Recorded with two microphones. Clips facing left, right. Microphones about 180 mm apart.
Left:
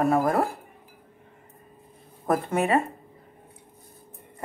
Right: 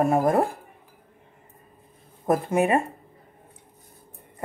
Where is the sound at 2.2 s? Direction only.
15° right (ahead or behind).